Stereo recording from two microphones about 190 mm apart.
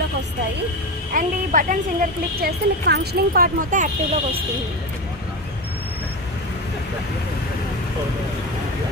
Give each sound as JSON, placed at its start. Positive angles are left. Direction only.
{"t": 1.1, "sound": "a woman's voice", "side_deg": -45}